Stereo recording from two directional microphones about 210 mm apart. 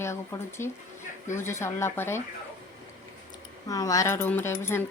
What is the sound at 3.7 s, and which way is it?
Speech, 15° left (ahead or behind).